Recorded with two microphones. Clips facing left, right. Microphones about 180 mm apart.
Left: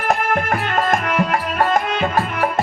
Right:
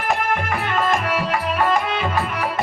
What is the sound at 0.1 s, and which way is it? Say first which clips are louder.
Music: left 3 dB; 45° left (ahead or behind).